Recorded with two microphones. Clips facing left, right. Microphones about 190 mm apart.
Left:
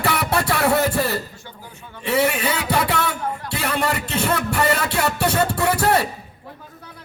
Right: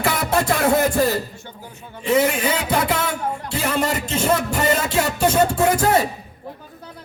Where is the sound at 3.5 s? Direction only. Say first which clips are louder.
Right 1 dB; 65° left (ahead or behind).